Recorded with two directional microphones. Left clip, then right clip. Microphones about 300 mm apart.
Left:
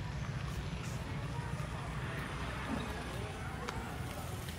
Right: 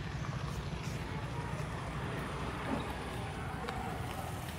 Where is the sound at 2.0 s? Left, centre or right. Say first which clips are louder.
Right 2 dB; right.